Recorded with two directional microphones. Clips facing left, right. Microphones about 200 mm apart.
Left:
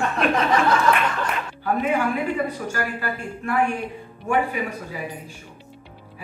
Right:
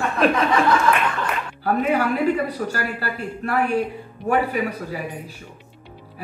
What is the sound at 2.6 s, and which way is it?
Speech, 35° right (ahead or behind).